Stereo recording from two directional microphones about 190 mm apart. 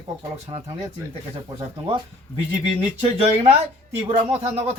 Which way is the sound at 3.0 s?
30° right (ahead or behind).